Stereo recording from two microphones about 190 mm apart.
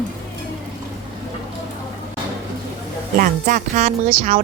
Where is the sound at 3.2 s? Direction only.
45° right (ahead or behind).